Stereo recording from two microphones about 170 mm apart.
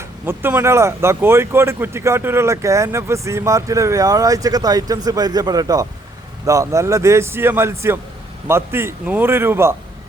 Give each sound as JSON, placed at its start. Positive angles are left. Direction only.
{"t": 0.3, "sound": "speech", "side_deg": -15}